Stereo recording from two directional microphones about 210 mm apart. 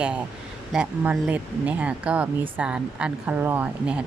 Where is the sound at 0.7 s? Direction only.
5° right (ahead or behind).